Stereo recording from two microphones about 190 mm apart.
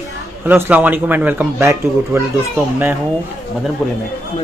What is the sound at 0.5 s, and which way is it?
A man's voice, 10° right (ahead or behind).